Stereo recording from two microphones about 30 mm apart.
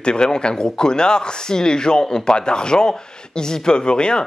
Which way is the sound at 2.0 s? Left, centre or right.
Centre.